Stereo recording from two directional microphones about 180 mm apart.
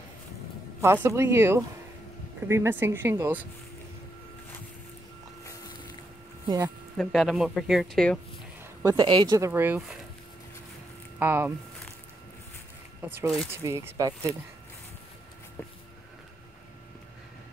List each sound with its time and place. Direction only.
0.7 s speech: 15° right (ahead or behind)
5.4 s a sound: 20° left (ahead or behind)
6.4 s speech: 20° right (ahead or behind)
7.0 s speech: centre (ahead or behind)
8.8 s speech: 25° right (ahead or behind); by 9.9 s 5° right (ahead or behind)
11.1 s speech: 10° right (ahead or behind)
13.0 s speech: 10° right (ahead or behind)